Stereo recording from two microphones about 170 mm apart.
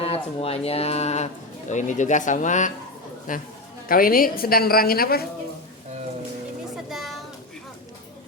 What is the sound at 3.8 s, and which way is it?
A woman's voice, 55° left (ahead or behind).